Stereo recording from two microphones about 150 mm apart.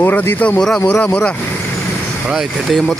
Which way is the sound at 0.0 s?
15° left (ahead or behind).